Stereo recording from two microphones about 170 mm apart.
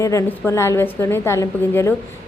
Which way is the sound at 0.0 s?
20° left (ahead or behind).